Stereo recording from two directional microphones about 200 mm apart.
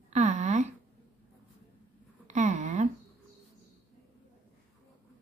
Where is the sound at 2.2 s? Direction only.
35° right (ahead or behind).